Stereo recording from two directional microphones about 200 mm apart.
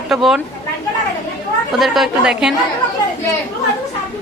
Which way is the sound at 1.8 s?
Centre (ahead or behind).